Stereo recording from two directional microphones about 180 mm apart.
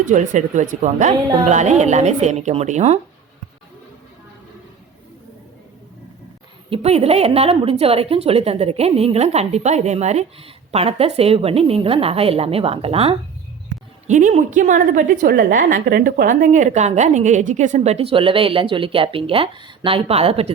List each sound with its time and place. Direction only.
0.0 s a woman's voice: 45° right (ahead or behind)
6.7 s a woman's voice: 35° right (ahead or behind)